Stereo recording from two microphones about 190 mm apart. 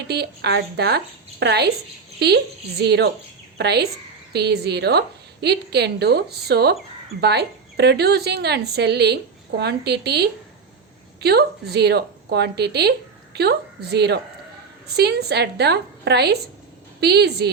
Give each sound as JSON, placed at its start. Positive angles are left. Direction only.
{"t": 0.1, "sound": "a woman's voice", "side_deg": -60}